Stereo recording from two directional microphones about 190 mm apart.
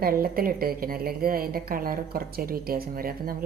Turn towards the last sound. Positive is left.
turn(degrees=-50)  # may be behind; listen again after turning